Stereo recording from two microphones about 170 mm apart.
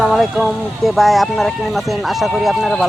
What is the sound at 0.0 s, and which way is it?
Speech, centre (ahead or behind).